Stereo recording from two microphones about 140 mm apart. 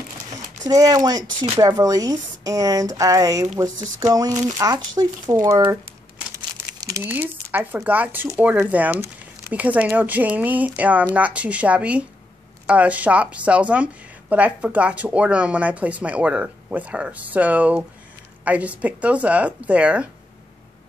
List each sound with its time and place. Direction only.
0.7 s a woman's voice: 25° right (ahead or behind)
6.3 s crumpling: 25° right (ahead or behind)
7.0 s speech: 15° right (ahead or behind)